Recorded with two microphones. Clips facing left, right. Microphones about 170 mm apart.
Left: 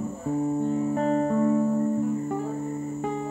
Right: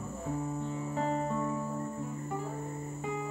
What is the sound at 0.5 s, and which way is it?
Music, 45° left (ahead or behind).